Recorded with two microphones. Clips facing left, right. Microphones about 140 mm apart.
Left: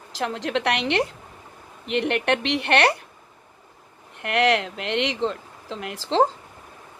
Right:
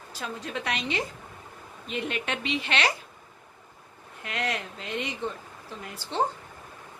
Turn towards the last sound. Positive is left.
turn(degrees=90)